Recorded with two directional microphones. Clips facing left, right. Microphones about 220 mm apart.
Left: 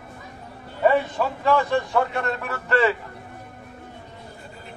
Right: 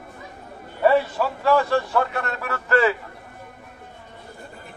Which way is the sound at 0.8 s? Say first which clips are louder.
Right 1 dB; 5° right (ahead or behind).